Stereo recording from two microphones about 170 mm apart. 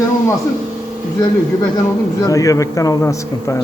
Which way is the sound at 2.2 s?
20° left (ahead or behind).